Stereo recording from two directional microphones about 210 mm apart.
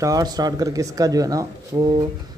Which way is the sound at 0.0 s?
20° right (ahead or behind).